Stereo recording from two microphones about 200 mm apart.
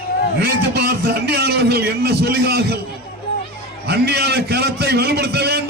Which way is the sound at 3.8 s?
50° right (ahead or behind).